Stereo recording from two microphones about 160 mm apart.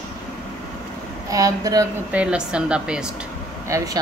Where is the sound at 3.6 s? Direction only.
20° right (ahead or behind).